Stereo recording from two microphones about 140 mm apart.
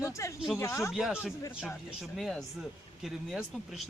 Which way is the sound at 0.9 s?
5° right (ahead or behind).